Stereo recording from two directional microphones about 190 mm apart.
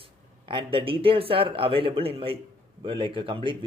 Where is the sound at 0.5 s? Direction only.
25° right (ahead or behind).